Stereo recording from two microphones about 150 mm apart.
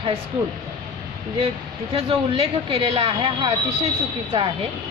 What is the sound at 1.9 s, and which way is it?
A woman's voice, 40° right (ahead or behind).